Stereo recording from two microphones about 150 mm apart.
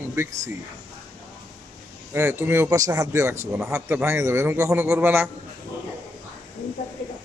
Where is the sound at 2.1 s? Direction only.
15° right (ahead or behind).